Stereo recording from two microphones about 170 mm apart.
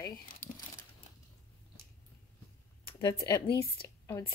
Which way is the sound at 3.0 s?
20° left (ahead or behind).